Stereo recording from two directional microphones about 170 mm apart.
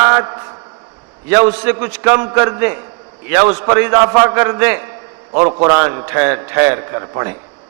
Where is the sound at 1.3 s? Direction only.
10° right (ahead or behind).